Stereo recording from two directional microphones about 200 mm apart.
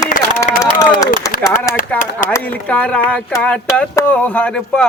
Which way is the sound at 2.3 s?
5° left (ahead or behind).